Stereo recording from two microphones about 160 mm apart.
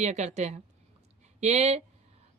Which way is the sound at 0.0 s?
45° right (ahead or behind).